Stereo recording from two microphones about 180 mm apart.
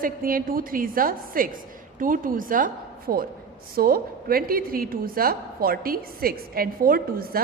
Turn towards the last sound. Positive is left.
turn(degrees=-55)  # may be behind; listen again after turning